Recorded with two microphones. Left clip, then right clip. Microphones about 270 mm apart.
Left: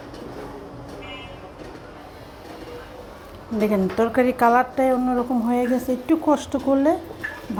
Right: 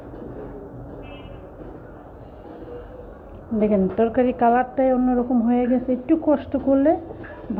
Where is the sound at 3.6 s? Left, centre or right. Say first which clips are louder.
Right 1 dB; left.